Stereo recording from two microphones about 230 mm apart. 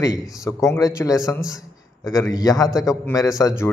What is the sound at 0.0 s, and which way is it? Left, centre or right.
A man's voice, centre.